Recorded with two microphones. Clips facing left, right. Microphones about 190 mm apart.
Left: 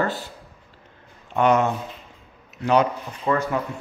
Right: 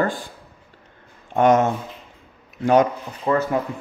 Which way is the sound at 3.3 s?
20° right (ahead or behind).